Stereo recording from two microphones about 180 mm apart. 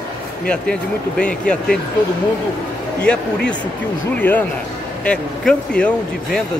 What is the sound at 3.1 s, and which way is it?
A man's voice, 5° left (ahead or behind).